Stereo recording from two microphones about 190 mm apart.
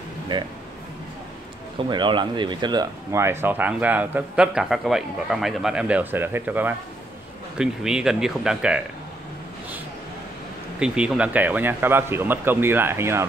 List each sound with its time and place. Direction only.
0.3 s speech: 25° right (ahead or behind)
1.9 s speech: 25° right (ahead or behind); by 8.8 s 5° right (ahead or behind)
10.8 s speech: 5° right (ahead or behind)